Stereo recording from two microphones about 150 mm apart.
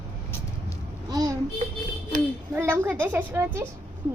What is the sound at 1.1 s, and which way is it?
Speech, 25° right (ahead or behind).